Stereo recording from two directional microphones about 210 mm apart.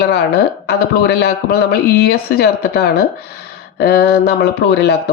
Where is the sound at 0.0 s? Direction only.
50° left (ahead or behind).